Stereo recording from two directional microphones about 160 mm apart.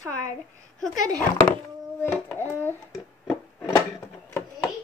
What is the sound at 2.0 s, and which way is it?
Music, 10° left (ahead or behind).